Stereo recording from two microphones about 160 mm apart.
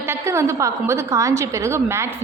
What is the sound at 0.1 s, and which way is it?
A woman's voice, 15° right (ahead or behind).